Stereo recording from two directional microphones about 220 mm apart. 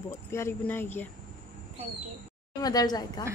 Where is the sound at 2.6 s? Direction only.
15° left (ahead or behind).